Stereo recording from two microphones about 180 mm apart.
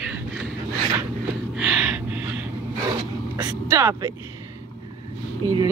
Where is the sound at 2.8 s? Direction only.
15° right (ahead or behind).